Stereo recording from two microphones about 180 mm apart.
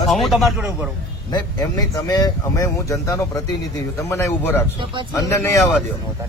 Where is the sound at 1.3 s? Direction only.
20° left (ahead or behind).